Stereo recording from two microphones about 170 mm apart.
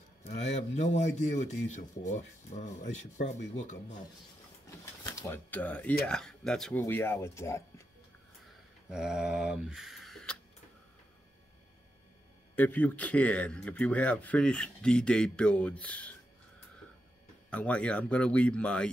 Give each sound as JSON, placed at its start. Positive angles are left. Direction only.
{"t": 0.2, "sound": "speech", "side_deg": 40}
{"t": 5.0, "sound": "a sound", "side_deg": 20}
{"t": 5.5, "sound": "speech", "side_deg": 10}
{"t": 6.8, "sound": "speech", "side_deg": 15}
{"t": 8.8, "sound": "speech", "side_deg": -5}
{"t": 12.5, "sound": "speech", "side_deg": 10}
{"t": 17.5, "sound": "speech", "side_deg": 5}